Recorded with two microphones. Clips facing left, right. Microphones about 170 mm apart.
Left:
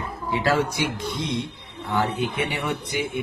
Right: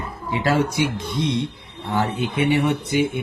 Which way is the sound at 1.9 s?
25° right (ahead or behind).